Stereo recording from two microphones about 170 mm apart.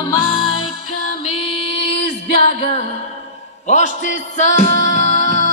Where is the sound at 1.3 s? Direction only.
35° left (ahead or behind).